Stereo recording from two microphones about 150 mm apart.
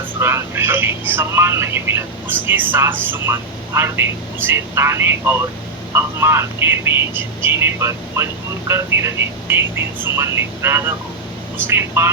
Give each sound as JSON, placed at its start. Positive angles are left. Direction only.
{"t": 0.2, "sound": "speech", "side_deg": -15}